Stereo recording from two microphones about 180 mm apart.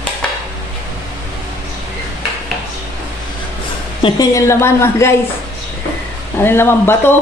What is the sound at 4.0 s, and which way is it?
A woman's voice, 20° left (ahead or behind).